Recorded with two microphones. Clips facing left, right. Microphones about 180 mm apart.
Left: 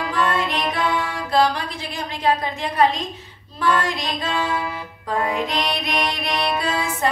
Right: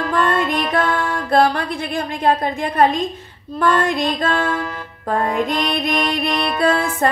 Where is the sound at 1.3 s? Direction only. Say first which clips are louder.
Right 3 dB; 55° right (ahead or behind).